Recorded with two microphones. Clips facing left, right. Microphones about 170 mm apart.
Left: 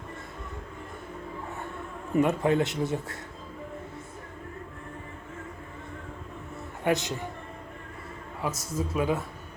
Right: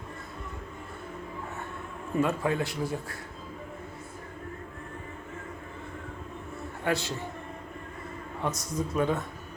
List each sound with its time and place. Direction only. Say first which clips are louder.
2.2 s speech: left 3 dB; 20° left (ahead or behind)
6.8 s a man's voice: left 3 dB; 20° left (ahead or behind)
8.4 s a man's voice: even; 5° left (ahead or behind)